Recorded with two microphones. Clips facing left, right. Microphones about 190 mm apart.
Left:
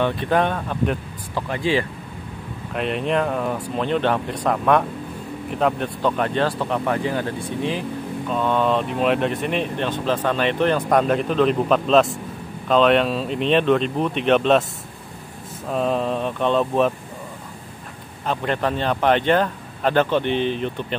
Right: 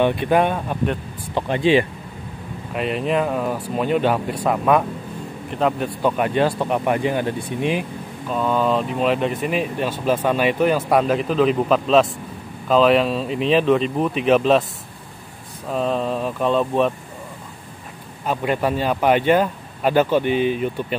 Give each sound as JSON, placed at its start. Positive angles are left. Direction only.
{"t": 0.0, "sound": "speech", "side_deg": -15}
{"t": 2.7, "sound": "speech", "side_deg": 0}
{"t": 8.3, "sound": "speech", "side_deg": -5}
{"t": 15.7, "sound": "speech", "side_deg": 0}
{"t": 18.2, "sound": "speech", "side_deg": -10}